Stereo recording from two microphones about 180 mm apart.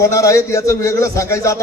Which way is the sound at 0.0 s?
15° left (ahead or behind).